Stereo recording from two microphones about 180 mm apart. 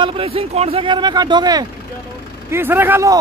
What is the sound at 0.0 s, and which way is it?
Speech, 30° right (ahead or behind).